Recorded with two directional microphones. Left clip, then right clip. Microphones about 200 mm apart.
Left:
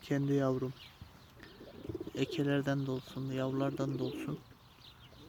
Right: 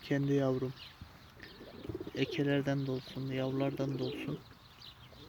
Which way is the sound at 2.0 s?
10° left (ahead or behind).